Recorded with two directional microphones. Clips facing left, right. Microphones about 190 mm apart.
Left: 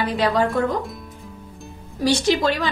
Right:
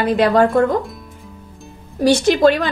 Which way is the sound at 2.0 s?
55° right (ahead or behind).